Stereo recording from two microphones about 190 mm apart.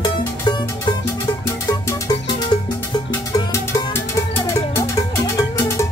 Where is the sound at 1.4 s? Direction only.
15° left (ahead or behind).